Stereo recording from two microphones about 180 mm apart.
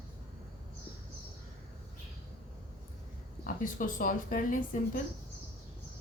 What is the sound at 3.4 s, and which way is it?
Speech, 50° left (ahead or behind).